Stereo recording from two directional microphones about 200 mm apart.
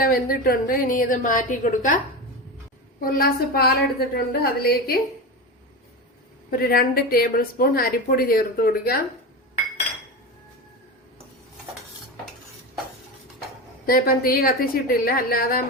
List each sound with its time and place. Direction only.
0.0 s a woman's voice: 45° left (ahead or behind)
3.0 s a woman's voice: 50° left (ahead or behind)
6.5 s a woman's voice: 45° left (ahead or behind)
13.8 s a woman's voice: 50° left (ahead or behind)